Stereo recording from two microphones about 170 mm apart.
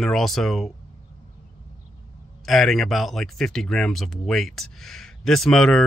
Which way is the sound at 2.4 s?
Centre (ahead or behind).